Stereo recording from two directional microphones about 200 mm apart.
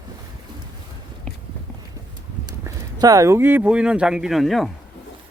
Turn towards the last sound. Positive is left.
turn(degrees=0)  # may be behind; listen again after turning